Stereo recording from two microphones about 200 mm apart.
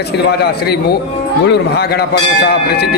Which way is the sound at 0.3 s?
55° left (ahead or behind).